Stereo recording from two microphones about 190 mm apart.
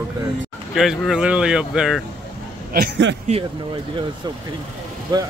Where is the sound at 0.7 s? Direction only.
Centre (ahead or behind).